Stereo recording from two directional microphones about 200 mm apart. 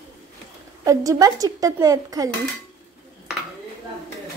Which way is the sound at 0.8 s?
15° right (ahead or behind).